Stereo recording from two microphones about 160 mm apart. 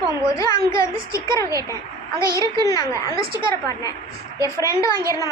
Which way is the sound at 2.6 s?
25° left (ahead or behind).